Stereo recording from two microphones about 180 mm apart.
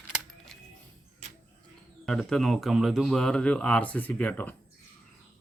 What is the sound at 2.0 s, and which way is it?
A man's voice, centre (ahead or behind).